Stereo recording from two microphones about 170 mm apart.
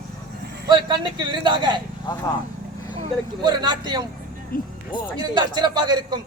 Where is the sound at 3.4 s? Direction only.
25° right (ahead or behind).